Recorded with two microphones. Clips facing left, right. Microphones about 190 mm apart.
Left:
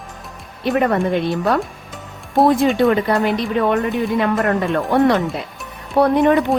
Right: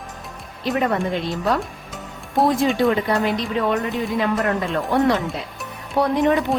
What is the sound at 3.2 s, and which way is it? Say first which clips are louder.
A woman's voice: left 3 dB; 55° left (ahead or behind).